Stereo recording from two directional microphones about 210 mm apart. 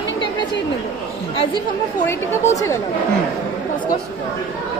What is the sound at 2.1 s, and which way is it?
Speech, 15° left (ahead or behind).